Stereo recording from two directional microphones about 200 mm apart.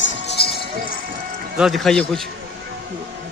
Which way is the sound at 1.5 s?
Centre (ahead or behind).